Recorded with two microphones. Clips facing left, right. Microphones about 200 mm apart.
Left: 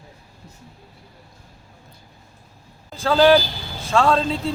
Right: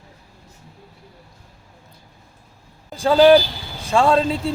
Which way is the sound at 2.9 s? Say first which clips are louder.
Right 3 dB; 15° right (ahead or behind).